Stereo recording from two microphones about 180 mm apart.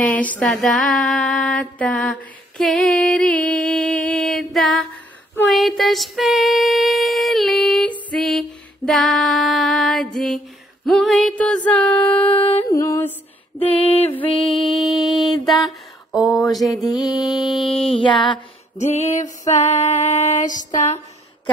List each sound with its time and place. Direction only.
0.0 s female singing: 10° left (ahead or behind)
3.4 s music: 5° left (ahead or behind)
5.3 s female singing: centre (ahead or behind)
12.3 s female singing: 30° left (ahead or behind)
12.6 s music: 20° left (ahead or behind)
13.7 s female singing: 30° left (ahead or behind)
14.2 s mantra: 30° left (ahead or behind)
15.4 s a sound: centre (ahead or behind)
16.5 s female singing: centre (ahead or behind)
17.0 s mantra: 20° left (ahead or behind)
18.8 s female singing: 40° left (ahead or behind)